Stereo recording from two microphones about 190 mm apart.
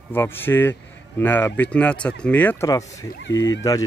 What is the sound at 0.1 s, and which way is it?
Speech, 10° left (ahead or behind).